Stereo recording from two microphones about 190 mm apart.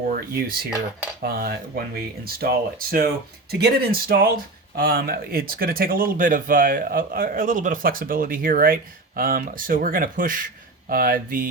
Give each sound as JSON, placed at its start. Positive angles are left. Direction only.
{"t": 0.1, "sound": "speech", "side_deg": -50}